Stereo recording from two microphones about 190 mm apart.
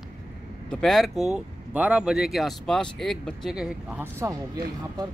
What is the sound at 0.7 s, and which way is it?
Speech, centre (ahead or behind).